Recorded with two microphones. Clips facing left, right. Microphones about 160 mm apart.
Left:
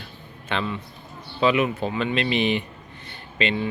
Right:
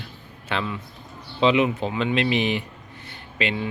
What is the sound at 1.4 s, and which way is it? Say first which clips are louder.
Speech: right 1 dB; 20° right (ahead or behind).